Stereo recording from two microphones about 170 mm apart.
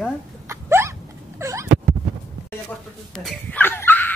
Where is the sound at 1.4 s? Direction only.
15° right (ahead or behind).